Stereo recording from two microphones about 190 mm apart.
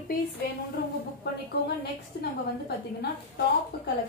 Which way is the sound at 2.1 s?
60° left (ahead or behind).